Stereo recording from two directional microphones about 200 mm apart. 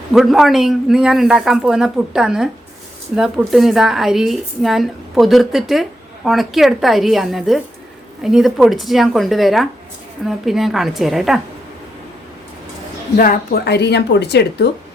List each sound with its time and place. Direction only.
0.1 s speech: centre (ahead or behind)
13.1 s a woman's voice: 45° left (ahead or behind)